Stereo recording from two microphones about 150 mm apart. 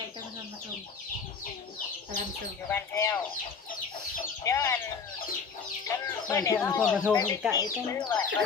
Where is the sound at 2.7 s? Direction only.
15° left (ahead or behind).